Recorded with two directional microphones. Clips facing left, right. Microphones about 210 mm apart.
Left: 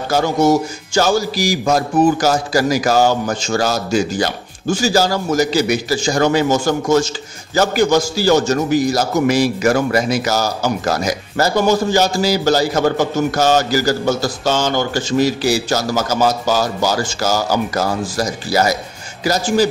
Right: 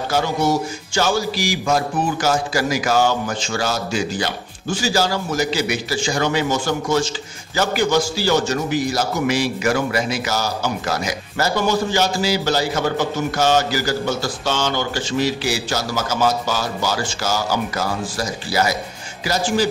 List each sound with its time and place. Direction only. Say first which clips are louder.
0.1 s a man's voice: left 6 dB; 45° left (ahead or behind)